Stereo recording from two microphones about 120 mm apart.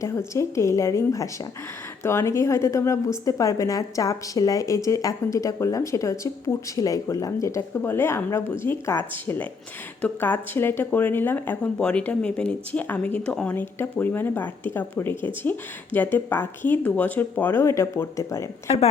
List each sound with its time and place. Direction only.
0.0 s a woman's voice: 25° left (ahead or behind)